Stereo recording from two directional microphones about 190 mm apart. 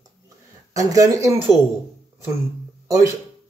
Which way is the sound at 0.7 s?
15° right (ahead or behind).